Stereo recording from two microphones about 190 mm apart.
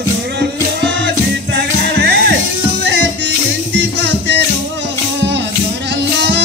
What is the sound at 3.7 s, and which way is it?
Music, 65° right (ahead or behind).